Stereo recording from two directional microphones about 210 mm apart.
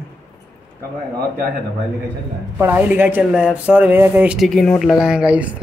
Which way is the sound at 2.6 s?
10° right (ahead or behind).